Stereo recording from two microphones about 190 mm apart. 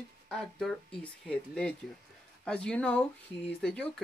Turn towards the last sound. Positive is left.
turn(degrees=5)  # may be behind; listen again after turning